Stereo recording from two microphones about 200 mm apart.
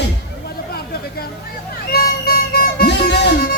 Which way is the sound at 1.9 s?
50° left (ahead or behind).